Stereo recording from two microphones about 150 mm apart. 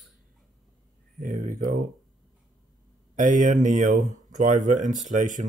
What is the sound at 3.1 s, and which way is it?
Speech, 60° right (ahead or behind).